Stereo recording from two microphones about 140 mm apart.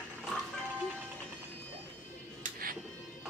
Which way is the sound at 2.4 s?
90° right.